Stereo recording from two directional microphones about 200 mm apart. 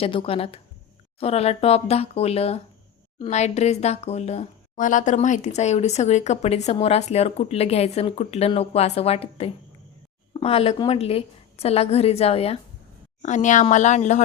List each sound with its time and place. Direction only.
0.0 s speech: 25° left (ahead or behind)